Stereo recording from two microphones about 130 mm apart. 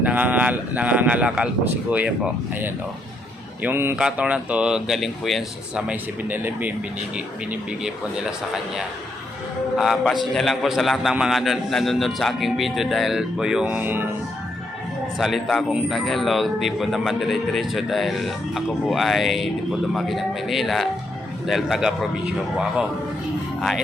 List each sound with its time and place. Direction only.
0.0 s speech: 10° right (ahead or behind)
3.6 s a man's voice: 15° right (ahead or behind)
9.7 s a man's voice: 5° right (ahead or behind)
15.2 s a man's voice: centre (ahead or behind)